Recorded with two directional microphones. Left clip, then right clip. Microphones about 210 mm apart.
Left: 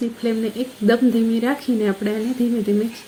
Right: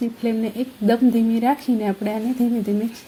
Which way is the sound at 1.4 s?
40° right (ahead or behind).